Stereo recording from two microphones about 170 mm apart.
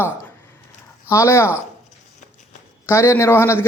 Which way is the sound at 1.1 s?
15° left (ahead or behind).